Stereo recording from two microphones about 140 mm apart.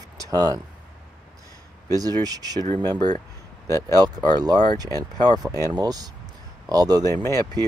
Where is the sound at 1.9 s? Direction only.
25° right (ahead or behind).